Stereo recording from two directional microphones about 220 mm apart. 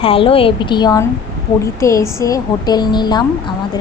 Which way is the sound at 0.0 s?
25° left (ahead or behind).